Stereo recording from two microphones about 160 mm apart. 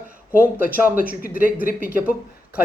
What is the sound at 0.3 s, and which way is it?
A man's voice, 10° right (ahead or behind).